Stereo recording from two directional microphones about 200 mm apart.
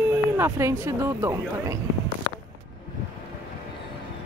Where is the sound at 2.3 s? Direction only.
60° right (ahead or behind).